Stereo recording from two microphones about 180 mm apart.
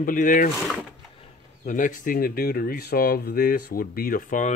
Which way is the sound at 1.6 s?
45° left (ahead or behind).